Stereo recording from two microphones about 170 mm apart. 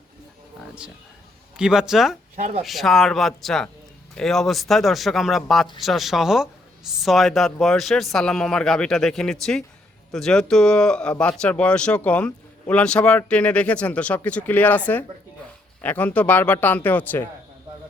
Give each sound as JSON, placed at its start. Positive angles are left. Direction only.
{"t": 1.5, "sound": "speech", "side_deg": -5}
{"t": 2.3, "sound": "speech", "side_deg": -45}
{"t": 2.6, "sound": "speech", "side_deg": 0}